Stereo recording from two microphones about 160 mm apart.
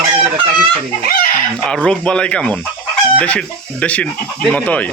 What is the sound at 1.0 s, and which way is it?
Speech, 70° left (ahead or behind).